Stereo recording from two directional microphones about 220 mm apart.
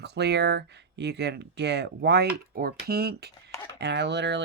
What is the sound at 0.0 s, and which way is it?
Speech, 50° right (ahead or behind).